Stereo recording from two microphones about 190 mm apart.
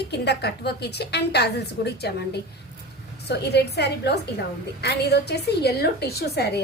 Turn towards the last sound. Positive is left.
turn(degrees=60)  # may be behind; listen again after turning